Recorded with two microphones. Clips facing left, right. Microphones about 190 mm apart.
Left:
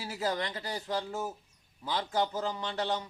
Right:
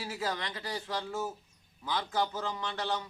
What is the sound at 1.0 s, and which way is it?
Speech, 15° left (ahead or behind).